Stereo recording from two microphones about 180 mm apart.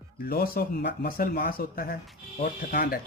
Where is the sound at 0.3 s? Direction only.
55° left (ahead or behind).